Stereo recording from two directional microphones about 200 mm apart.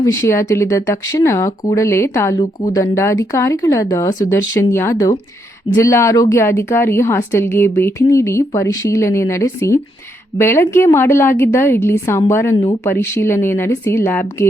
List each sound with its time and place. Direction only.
0.0 s a woman's voice: 15° left (ahead or behind)